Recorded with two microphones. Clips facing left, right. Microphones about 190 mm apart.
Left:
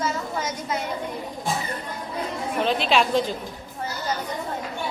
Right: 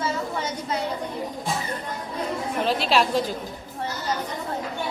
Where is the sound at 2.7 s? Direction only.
5° right (ahead or behind).